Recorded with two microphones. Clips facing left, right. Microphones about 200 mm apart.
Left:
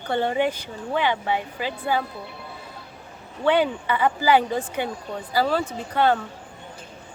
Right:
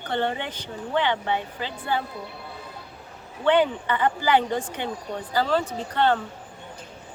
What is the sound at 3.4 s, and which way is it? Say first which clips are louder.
A woman's voice: even; 10° left (ahead or behind).